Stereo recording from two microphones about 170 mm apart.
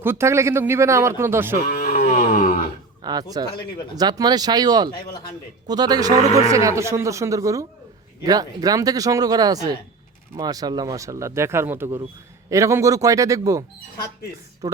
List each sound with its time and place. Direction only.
0.0 s speech: 15° right (ahead or behind)
1.8 s a sound: 50° left (ahead or behind)
3.0 s speech: 25° right (ahead or behind)